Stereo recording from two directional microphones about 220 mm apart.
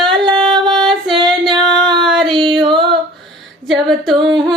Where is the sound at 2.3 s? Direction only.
20° right (ahead or behind).